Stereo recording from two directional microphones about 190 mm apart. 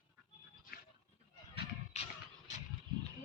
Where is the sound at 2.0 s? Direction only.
35° left (ahead or behind).